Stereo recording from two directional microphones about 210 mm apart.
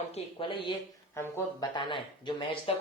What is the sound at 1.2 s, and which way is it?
Speech, 10° left (ahead or behind).